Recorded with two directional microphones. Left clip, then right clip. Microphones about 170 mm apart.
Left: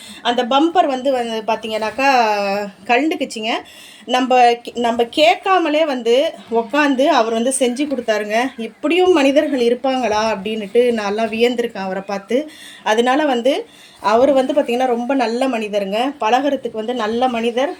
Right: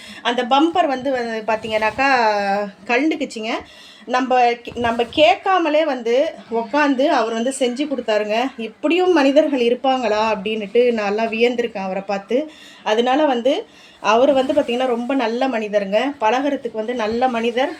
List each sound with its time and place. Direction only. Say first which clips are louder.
0.3 s speech: left 1 dB; 5° left (ahead or behind)
1.4 s speech: even; 20° left (ahead or behind); by 3.2 s 5° left (ahead or behind)
4.1 s speech: left 3 dB; 20° left (ahead or behind)